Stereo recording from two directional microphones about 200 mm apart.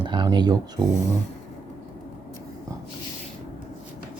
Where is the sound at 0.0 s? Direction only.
25° right (ahead or behind).